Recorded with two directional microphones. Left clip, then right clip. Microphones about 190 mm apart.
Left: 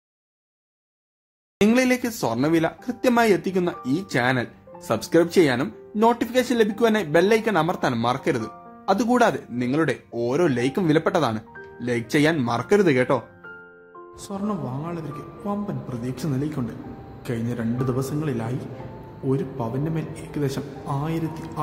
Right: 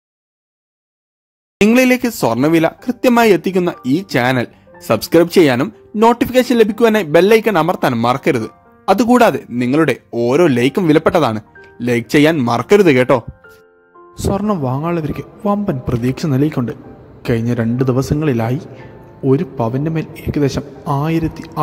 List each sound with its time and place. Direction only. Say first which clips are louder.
1.6 s speech: right 8 dB; 40° right (ahead or behind)
14.3 s a man's voice: right 11 dB; 40° right (ahead or behind)